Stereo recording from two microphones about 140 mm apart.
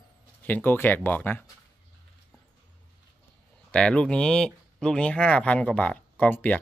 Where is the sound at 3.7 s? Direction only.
5° left (ahead or behind).